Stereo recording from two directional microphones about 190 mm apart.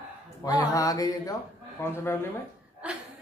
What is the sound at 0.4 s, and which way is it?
Speech, 15° left (ahead or behind).